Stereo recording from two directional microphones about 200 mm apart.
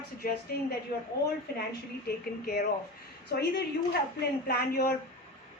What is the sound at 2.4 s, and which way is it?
A woman's voice, 50° left (ahead or behind).